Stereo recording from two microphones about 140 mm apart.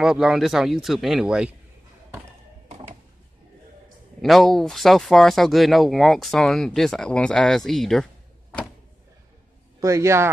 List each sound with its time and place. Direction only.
0.0 s speech: 5° right (ahead or behind)
4.2 s speech: centre (ahead or behind)
9.8 s a man's voice: 20° right (ahead or behind)